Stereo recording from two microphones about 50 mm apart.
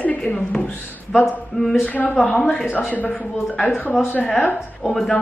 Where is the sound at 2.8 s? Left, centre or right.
Left.